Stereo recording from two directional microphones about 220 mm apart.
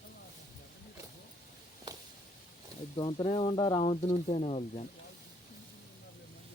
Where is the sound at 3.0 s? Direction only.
20° left (ahead or behind).